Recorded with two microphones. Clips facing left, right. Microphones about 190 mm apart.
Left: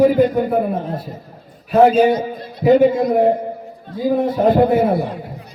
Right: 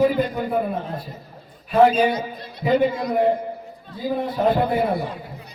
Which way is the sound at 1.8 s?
45° left (ahead or behind).